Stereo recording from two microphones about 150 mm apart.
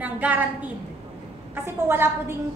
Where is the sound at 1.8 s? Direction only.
15° right (ahead or behind).